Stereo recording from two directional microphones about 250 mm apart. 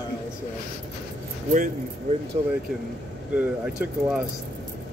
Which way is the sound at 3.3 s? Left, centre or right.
Centre.